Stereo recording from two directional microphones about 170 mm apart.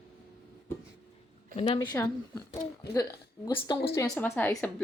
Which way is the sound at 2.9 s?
20° left (ahead or behind).